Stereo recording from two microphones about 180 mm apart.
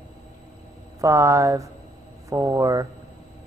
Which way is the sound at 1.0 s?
15° right (ahead or behind).